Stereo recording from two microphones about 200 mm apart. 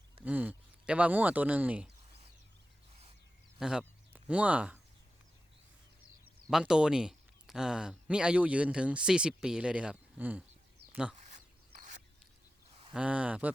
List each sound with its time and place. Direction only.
0.3 s speech: 10° right (ahead or behind)
3.6 s speech: 5° right (ahead or behind)
6.5 s speech: 5° right (ahead or behind)
11.3 s a sound: 40° right (ahead or behind)
12.9 s speech: 5° right (ahead or behind)